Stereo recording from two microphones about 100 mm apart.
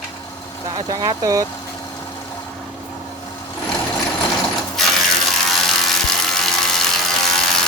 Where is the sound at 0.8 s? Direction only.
40° right (ahead or behind).